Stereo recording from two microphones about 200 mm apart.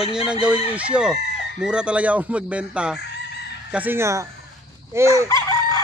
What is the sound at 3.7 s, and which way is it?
Speech, 10° right (ahead or behind).